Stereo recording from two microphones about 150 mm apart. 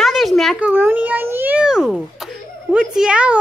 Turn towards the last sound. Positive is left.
turn(degrees=-5)  # may be behind; listen again after turning